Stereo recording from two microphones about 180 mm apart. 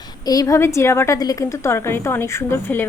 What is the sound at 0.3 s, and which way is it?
A woman's voice, 20° left (ahead or behind).